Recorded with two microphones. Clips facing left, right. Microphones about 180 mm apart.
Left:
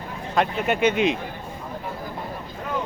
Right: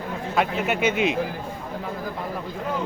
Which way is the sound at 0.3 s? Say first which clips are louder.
Left 2 dB; 5° right (ahead or behind).